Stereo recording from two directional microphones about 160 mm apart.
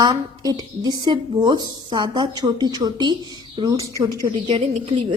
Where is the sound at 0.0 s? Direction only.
25° right (ahead or behind).